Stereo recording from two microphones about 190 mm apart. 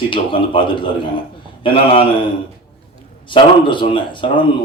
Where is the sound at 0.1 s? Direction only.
25° left (ahead or behind).